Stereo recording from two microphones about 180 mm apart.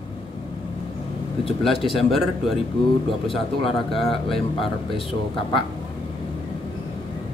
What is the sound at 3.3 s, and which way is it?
Speech, 30° left (ahead or behind).